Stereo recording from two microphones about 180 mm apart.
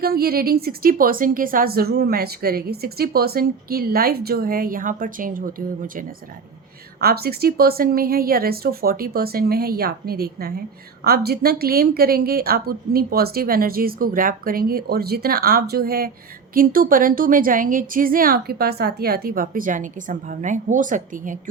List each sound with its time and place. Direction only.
0.0 s a woman's voice: 60° right (ahead or behind)
7.0 s a woman's voice: 60° right (ahead or behind)